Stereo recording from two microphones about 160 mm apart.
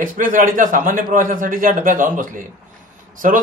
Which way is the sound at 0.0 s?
60° right (ahead or behind).